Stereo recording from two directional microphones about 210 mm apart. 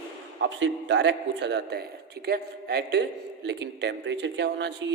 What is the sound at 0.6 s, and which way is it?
A man's voice, 55° right (ahead or behind).